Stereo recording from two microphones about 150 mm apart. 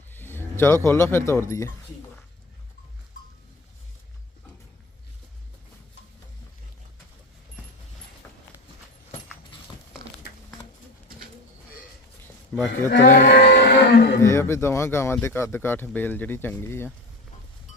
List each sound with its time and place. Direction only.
0.1 s speech: 15° left (ahead or behind)
12.5 s a sound: 5° left (ahead or behind)
13.0 s livestock: 65° left (ahead or behind); by 14.2 s 85° left
14.2 s speech: 20° left (ahead or behind)